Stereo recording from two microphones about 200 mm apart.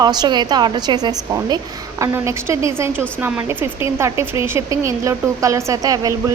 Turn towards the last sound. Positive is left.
turn(degrees=-20)  # may be behind; listen again after turning